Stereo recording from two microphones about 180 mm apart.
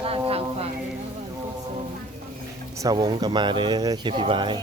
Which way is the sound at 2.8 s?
20° right (ahead or behind).